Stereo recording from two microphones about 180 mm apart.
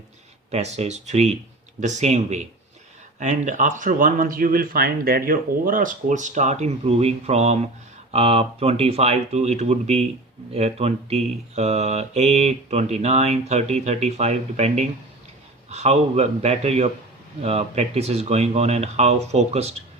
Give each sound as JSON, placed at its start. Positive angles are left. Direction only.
{"t": 0.5, "sound": "speech", "side_deg": -35}